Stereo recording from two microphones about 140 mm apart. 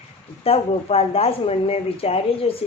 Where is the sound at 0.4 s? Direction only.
45° left (ahead or behind).